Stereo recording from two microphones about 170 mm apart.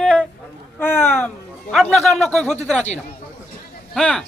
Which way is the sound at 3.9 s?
5° left (ahead or behind).